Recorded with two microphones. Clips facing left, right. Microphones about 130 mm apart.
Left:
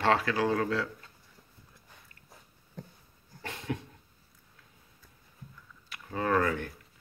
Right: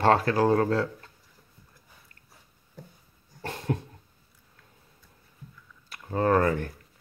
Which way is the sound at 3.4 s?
40° right (ahead or behind).